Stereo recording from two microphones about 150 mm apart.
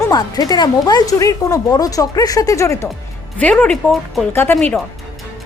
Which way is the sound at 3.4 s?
10° left (ahead or behind).